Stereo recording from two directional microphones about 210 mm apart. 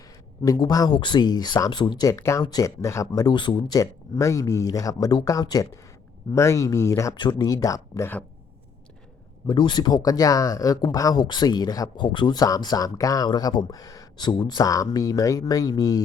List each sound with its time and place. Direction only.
0.4 s speech: 15° left (ahead or behind)
9.5 s speech: 20° left (ahead or behind)